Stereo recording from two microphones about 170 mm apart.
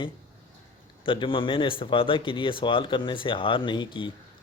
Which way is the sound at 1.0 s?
30° left (ahead or behind).